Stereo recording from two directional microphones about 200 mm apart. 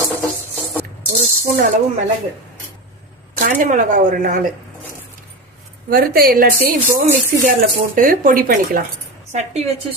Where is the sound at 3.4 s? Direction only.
40° right (ahead or behind).